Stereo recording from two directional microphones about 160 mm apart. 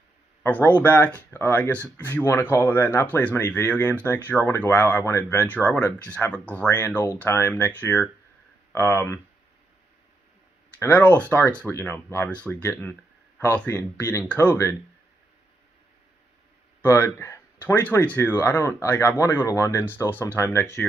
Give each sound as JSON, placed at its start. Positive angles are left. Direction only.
{"t": 0.4, "sound": "speech", "side_deg": 10}
{"t": 10.8, "sound": "speech", "side_deg": 10}
{"t": 16.8, "sound": "speech", "side_deg": 15}